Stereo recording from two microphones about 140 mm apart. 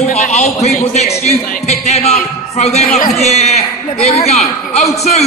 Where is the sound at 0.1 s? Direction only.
55° left (ahead or behind).